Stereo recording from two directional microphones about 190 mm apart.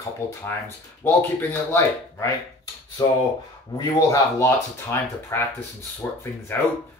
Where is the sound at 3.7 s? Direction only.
15° left (ahead or behind).